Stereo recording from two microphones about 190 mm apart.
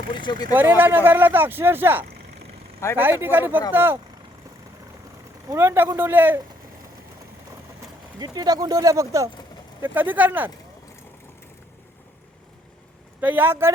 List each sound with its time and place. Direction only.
0.1 s speech: 25° left (ahead or behind)
0.5 s speech: 10° right (ahead or behind)
5.5 s speech: 10° right (ahead or behind)
8.2 s speech: 20° right (ahead or behind)
13.2 s speech: 10° right (ahead or behind)